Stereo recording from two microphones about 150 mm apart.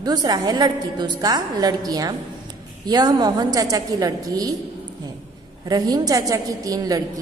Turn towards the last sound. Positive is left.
turn(degrees=-25)  # may be behind; listen again after turning